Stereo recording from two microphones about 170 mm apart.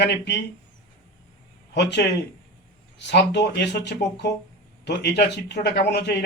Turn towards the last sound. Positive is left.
turn(degrees=75)  # may be behind; listen again after turning